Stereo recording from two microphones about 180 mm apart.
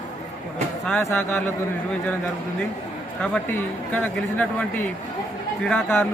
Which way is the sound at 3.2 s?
5° left (ahead or behind).